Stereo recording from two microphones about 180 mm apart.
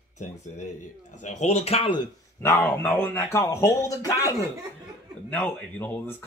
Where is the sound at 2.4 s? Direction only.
10° left (ahead or behind).